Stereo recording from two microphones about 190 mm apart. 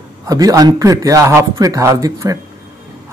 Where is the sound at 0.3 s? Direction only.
20° right (ahead or behind).